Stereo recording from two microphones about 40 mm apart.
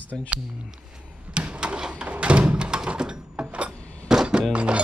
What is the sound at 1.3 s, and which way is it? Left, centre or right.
Door, right.